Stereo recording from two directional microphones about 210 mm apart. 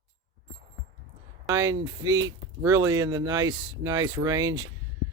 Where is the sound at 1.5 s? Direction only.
15° right (ahead or behind).